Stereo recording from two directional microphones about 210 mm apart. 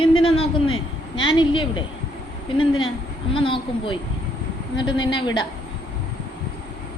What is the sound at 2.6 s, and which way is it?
Speech, 70° left (ahead or behind).